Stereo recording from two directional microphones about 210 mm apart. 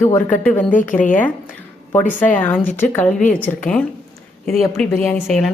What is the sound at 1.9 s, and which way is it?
A woman's voice, 5° left (ahead or behind).